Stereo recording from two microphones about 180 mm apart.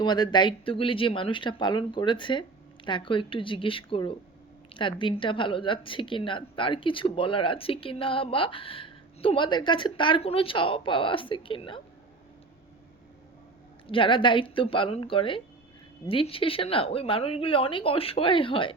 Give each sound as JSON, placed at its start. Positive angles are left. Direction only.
{"t": 0.0, "sound": "a woman's voice", "side_deg": 25}
{"t": 13.8, "sound": "a woman's voice", "side_deg": 30}